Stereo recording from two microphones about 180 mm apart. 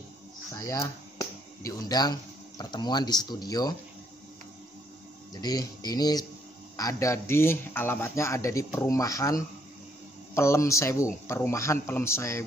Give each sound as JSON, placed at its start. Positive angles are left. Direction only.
{"t": 0.6, "sound": "speech", "side_deg": 15}
{"t": 5.3, "sound": "speech", "side_deg": 20}